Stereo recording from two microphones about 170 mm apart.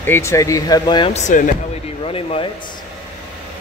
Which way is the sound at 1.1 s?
45° left (ahead or behind).